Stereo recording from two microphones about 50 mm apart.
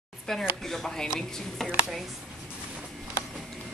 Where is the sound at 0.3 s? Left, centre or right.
Centre.